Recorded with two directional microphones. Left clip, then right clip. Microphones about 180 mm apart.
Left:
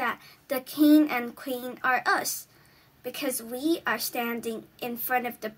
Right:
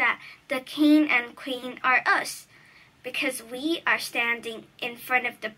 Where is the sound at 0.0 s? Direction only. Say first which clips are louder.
Right 6 dB; 60° left (ahead or behind).